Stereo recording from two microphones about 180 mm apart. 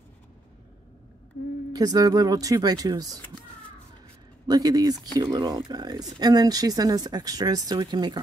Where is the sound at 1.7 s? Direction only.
20° right (ahead or behind).